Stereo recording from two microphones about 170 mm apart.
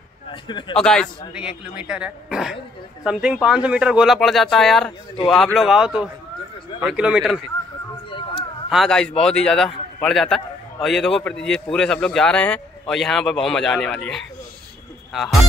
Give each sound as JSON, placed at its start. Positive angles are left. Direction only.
{"t": 0.3, "sound": "speech", "side_deg": 30}
{"t": 0.7, "sound": "a man's voice", "side_deg": 5}
{"t": 8.1, "sound": "a sound", "side_deg": 30}
{"t": 8.6, "sound": "a man's voice", "side_deg": 0}